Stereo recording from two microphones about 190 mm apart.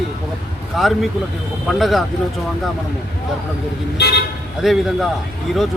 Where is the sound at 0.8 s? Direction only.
Centre (ahead or behind).